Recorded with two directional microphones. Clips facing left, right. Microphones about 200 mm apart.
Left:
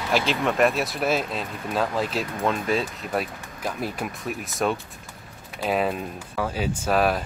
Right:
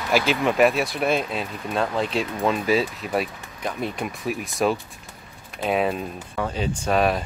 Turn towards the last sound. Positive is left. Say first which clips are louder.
# right 1 dB
turn(degrees=0)  # may be behind; listen again after turning